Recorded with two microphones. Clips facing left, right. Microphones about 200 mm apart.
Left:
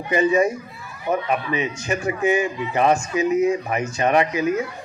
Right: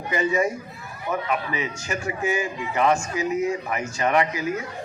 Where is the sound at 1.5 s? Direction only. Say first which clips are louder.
Left 5 dB; 20° left (ahead or behind).